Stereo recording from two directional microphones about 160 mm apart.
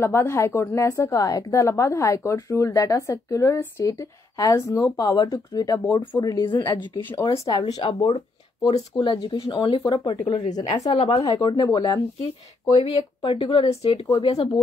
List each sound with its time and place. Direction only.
0.0 s a woman's voice: 15° left (ahead or behind)
7.1 s a woman's voice: 15° left (ahead or behind)